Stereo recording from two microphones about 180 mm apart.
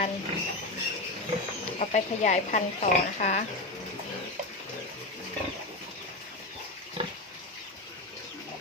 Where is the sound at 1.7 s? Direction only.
40° left (ahead or behind).